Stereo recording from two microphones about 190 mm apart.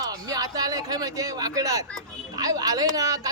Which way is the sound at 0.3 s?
20° right (ahead or behind).